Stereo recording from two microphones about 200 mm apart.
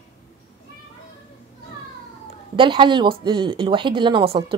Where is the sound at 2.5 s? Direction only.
25° right (ahead or behind).